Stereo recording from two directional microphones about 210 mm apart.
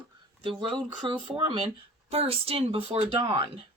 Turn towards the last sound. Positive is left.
turn(degrees=-25)  # may be behind; listen again after turning